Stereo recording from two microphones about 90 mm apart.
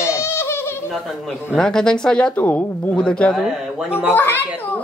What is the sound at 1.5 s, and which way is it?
Speech, 5° left (ahead or behind).